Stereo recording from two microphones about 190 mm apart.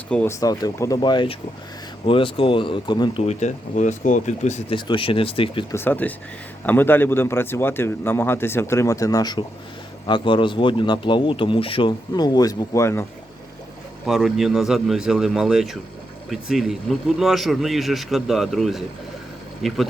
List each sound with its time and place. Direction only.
0.1 s speech: 10° left (ahead or behind)
3.2 s speech: 40° left (ahead or behind)
5.7 s a man's voice: 10° left (ahead or behind)
14.0 s speech: centre (ahead or behind)